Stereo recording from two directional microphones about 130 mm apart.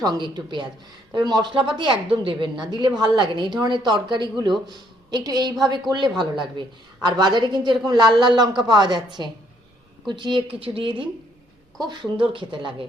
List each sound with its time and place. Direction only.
0.1 s a woman's voice: 35° right (ahead or behind)